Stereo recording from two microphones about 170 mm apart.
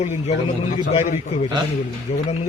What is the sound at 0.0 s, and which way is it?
A man's voice, 45° left (ahead or behind).